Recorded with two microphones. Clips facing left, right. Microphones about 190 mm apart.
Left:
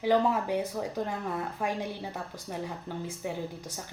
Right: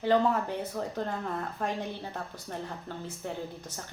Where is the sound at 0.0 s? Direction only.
10° left (ahead or behind).